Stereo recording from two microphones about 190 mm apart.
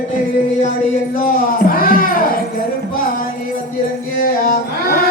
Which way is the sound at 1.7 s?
50° left (ahead or behind).